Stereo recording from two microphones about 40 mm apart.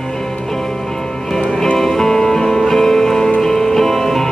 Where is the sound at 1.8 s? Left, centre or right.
Centre.